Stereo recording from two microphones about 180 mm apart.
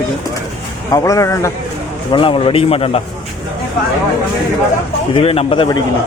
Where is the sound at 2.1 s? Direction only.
30° left (ahead or behind).